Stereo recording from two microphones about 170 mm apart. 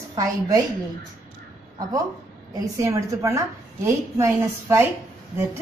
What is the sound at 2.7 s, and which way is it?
A woman's voice, 20° right (ahead or behind).